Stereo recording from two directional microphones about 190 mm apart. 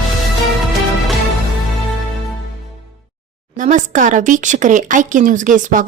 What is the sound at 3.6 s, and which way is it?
A woman's voice, 40° right (ahead or behind).